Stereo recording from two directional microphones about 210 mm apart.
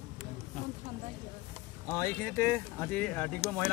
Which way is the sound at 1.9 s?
10° left (ahead or behind).